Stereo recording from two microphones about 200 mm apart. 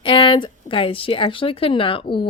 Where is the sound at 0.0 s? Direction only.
25° left (ahead or behind).